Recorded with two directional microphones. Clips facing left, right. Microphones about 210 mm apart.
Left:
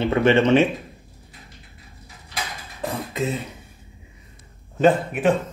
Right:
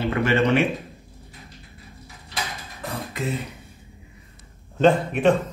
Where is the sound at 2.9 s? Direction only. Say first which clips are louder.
Left 4 dB; 25° left (ahead or behind).